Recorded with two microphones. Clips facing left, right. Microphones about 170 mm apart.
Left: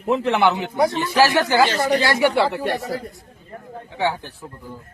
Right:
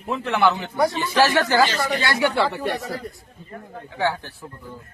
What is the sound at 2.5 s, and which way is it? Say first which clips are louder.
Speech: left 2 dB; 5° left (ahead or behind).